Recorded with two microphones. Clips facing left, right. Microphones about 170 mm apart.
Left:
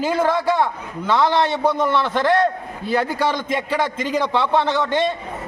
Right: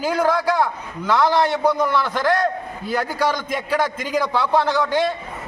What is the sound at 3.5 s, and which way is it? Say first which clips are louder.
A man's voice: even; centre (ahead or behind).